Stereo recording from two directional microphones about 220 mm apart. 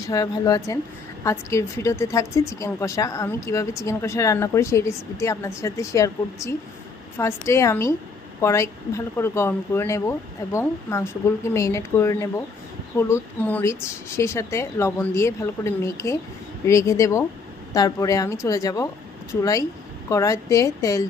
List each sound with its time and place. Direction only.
0.0 s a woman's voice: 15° left (ahead or behind)